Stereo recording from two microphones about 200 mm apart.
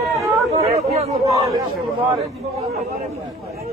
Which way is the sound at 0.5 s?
30° right (ahead or behind).